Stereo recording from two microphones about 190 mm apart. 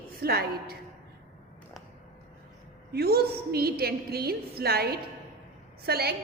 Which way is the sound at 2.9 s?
55° right (ahead or behind).